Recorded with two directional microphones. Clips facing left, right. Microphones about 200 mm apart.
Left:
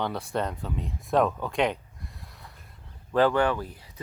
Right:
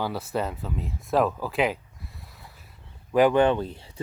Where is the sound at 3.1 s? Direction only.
15° right (ahead or behind).